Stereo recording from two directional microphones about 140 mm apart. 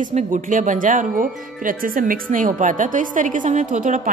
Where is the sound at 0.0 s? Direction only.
65° right (ahead or behind).